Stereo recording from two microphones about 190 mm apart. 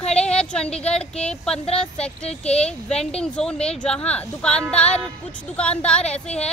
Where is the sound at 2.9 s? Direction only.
35° left (ahead or behind).